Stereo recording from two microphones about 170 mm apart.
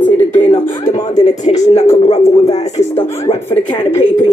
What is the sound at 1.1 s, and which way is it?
Speech, 45° left (ahead or behind).